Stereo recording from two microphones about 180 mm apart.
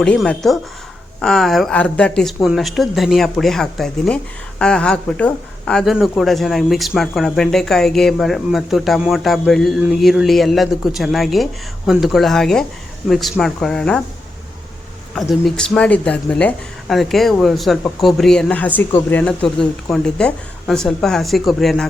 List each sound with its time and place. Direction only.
0.0 s speech: 5° left (ahead or behind)
15.1 s speech: centre (ahead or behind)